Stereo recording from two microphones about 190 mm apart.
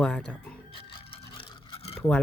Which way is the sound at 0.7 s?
30° left (ahead or behind).